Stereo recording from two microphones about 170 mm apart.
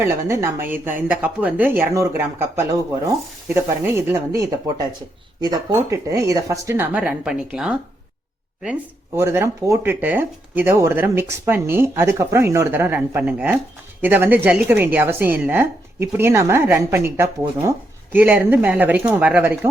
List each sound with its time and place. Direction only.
0.0 s a woman's voice: 15° right (ahead or behind)
6.9 s speech: 5° right (ahead or behind)
9.1 s a woman's voice: 15° right (ahead or behind)